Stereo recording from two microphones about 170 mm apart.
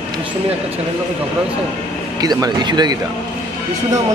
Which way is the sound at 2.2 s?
25° right (ahead or behind).